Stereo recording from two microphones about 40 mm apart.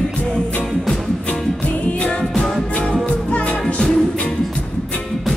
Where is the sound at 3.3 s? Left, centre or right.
Left.